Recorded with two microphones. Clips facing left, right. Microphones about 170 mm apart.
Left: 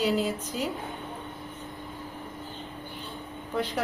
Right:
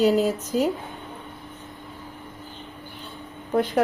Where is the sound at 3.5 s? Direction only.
50° right (ahead or behind).